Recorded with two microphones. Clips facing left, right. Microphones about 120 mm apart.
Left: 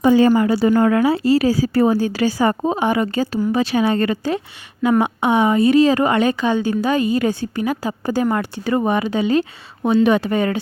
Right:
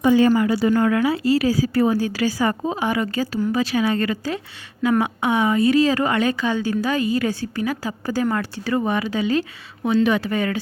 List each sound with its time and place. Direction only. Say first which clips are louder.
0.0 s a woman's voice: left 2 dB; 35° left (ahead or behind)